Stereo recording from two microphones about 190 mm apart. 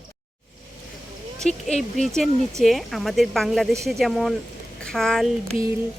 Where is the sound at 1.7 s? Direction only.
Centre (ahead or behind).